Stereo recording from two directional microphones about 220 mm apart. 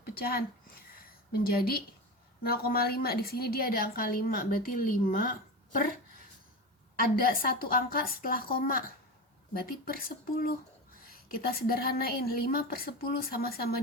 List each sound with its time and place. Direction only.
0.0 s a woman's voice: 45° left (ahead or behind)
7.0 s a woman's voice: 40° left (ahead or behind)
9.8 s a woman's voice: 40° left (ahead or behind)